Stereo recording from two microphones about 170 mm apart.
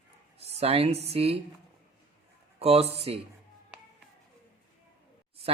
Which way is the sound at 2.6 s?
35° right (ahead or behind).